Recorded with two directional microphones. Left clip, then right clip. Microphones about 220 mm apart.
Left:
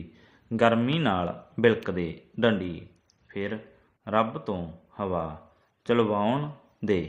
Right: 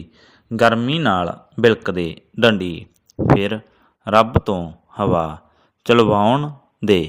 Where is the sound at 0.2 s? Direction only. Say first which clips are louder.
Right 8 dB; 30° right (ahead or behind).